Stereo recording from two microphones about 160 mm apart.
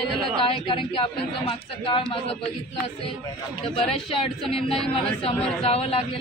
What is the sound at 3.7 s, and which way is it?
Speech, 35° left (ahead or behind).